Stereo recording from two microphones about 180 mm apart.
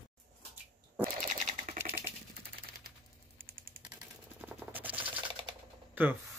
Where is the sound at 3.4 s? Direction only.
55° right (ahead or behind).